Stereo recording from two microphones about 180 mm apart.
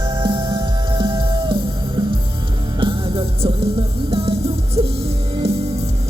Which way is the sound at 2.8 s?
30° right (ahead or behind).